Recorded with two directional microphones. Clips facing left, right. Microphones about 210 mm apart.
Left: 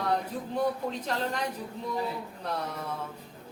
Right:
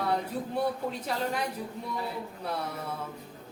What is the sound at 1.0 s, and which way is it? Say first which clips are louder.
Speech: right 1 dB; 10° right (ahead or behind).